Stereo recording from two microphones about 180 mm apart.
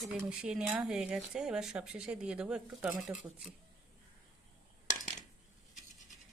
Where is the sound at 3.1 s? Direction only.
15° right (ahead or behind).